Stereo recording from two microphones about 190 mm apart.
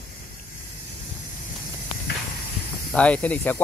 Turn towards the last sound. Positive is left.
turn(degrees=10)  # may be behind; listen again after turning